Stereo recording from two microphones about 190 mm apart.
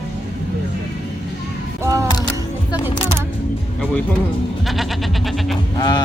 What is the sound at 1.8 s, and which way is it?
Single-lens reflex camera, 15° right (ahead or behind).